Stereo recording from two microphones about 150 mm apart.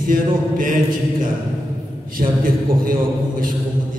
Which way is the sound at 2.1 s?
65° right (ahead or behind).